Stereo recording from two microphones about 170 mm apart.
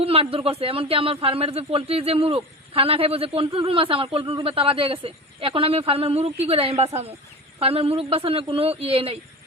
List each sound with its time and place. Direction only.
0.0 s speech: 35° right (ahead or behind)